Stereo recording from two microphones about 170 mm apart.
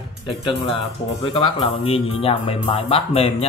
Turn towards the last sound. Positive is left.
turn(degrees=35)  # may be behind; listen again after turning